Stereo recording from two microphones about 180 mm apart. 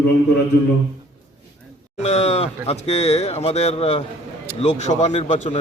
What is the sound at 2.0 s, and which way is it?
A man's voice, 35° left (ahead or behind).